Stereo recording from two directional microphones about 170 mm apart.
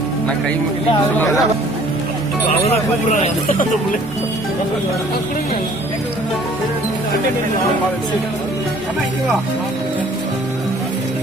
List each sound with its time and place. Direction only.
1.2 s speech: centre (ahead or behind)